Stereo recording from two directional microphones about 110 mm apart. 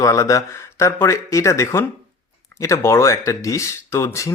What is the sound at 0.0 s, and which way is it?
Speech, 30° left (ahead or behind).